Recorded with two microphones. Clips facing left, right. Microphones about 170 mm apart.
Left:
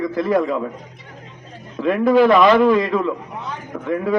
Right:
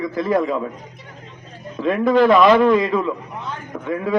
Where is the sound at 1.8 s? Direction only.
5° left (ahead or behind).